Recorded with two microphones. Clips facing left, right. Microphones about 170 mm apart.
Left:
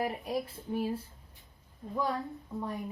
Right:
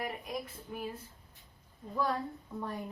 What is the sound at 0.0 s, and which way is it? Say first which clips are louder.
A woman's voice: left 5 dB; 30° left (ahead or behind).